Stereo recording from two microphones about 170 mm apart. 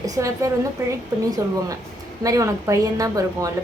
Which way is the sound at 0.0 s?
20° right (ahead or behind).